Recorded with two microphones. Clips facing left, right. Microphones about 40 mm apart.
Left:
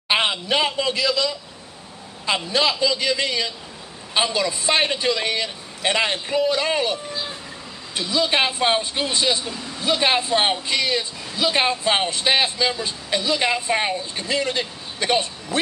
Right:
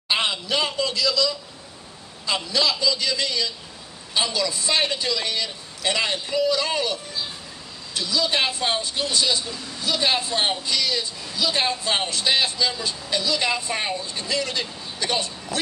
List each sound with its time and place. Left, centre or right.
0.1 s speech: left